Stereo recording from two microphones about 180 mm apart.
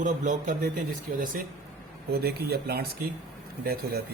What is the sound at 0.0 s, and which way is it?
Speech, 45° right (ahead or behind).